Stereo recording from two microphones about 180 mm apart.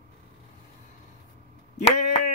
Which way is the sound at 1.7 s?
40° left (ahead or behind).